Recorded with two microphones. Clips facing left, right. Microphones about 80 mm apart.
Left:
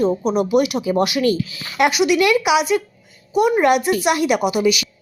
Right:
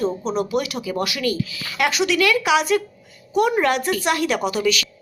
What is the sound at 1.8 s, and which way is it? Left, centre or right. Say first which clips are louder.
A woman's voice: left 4 dB; centre.